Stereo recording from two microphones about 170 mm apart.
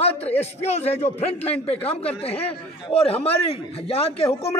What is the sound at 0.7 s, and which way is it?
Speech, 40° left (ahead or behind).